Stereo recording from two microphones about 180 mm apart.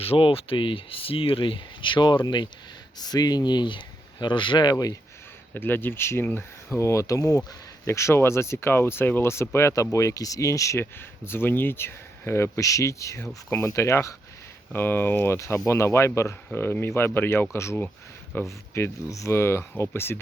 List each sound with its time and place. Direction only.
0.0 s speech: 30° left (ahead or behind); by 20.1 s 15° left (ahead or behind)